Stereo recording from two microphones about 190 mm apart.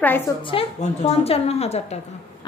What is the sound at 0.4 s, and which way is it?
A woman's voice, 30° left (ahead or behind).